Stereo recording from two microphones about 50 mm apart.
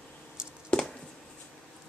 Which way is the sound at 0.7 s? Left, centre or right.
Left.